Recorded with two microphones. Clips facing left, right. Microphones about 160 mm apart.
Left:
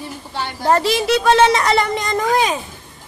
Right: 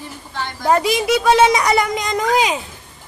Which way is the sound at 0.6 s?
10° right (ahead or behind).